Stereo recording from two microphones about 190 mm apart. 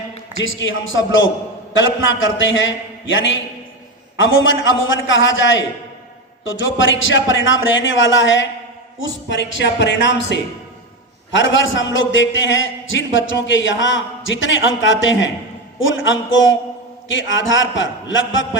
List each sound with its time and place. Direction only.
0.4 s a man's voice: 85° left
9.3 s speech: 70° left (ahead or behind)
11.3 s a man's voice: 75° left (ahead or behind)